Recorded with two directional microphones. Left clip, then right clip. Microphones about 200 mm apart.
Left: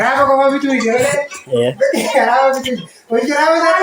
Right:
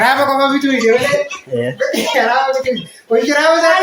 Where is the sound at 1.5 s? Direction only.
5° right (ahead or behind).